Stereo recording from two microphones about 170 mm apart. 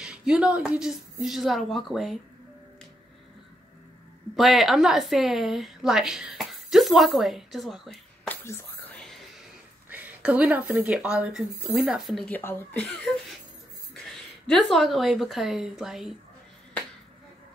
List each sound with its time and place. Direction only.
0.0 s a woman's voice: 5° right (ahead or behind)
4.4 s a woman's voice: centre (ahead or behind)
8.3 s whispering: 10° left (ahead or behind)
9.8 s speech: 10° right (ahead or behind)
12.4 s speech: 10° left (ahead or behind)
14.1 s a woman's voice: centre (ahead or behind)